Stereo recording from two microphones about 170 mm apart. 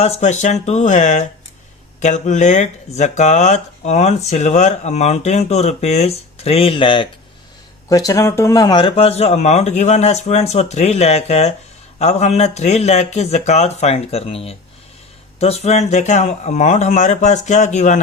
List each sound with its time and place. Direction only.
0.0 s speech: 40° left (ahead or behind)